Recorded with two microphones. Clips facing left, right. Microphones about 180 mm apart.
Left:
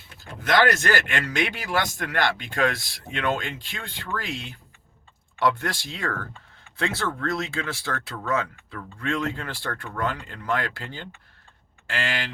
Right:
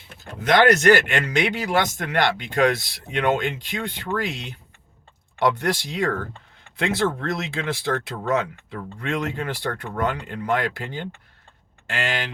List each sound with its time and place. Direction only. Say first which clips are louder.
0.2 s speech: right 3 dB; 20° right (ahead or behind)